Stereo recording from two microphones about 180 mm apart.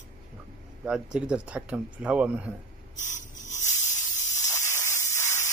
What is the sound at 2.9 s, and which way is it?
Sanding, 45° left (ahead or behind).